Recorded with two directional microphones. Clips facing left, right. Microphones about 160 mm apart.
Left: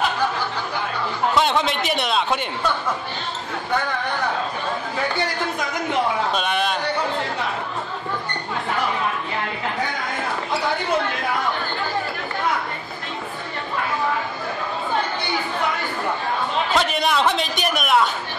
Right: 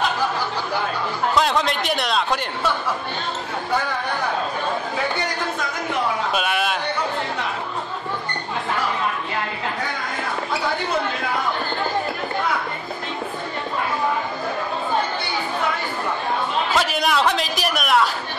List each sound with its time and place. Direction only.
1.3 s a man's voice: centre (ahead or behind)
6.3 s a sound: 5° right (ahead or behind)
16.7 s a man's voice: centre (ahead or behind)